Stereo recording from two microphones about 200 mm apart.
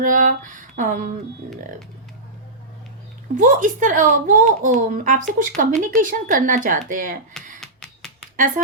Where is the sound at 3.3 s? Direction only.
40° right (ahead or behind).